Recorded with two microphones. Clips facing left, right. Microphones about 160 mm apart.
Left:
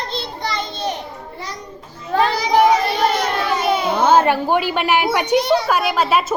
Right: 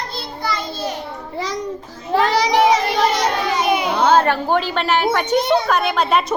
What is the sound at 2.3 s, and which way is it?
Child singing, 90° right.